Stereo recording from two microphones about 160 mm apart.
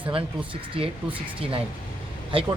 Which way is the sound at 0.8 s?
35° right (ahead or behind).